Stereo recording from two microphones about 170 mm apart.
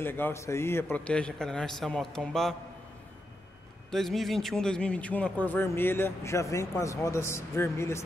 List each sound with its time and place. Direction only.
0.0 s a man's voice: 10° left (ahead or behind)
3.9 s a man's voice: centre (ahead or behind)